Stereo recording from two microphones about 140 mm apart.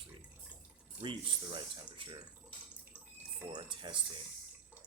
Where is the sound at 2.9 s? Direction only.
10° right (ahead or behind).